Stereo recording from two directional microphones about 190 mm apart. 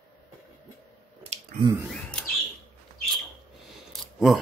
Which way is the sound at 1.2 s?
35° right (ahead or behind).